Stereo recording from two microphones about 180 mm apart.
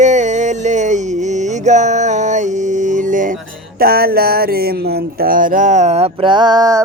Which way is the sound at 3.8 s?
55° right (ahead or behind).